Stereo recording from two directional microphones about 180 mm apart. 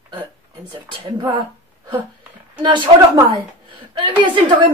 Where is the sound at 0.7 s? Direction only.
25° right (ahead or behind).